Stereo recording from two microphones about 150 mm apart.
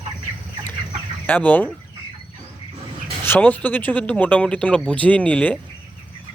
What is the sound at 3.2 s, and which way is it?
Speech, 15° left (ahead or behind).